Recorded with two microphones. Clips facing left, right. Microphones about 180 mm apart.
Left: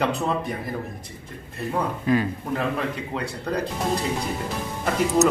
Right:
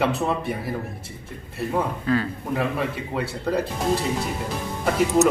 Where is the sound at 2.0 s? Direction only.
15° left (ahead or behind).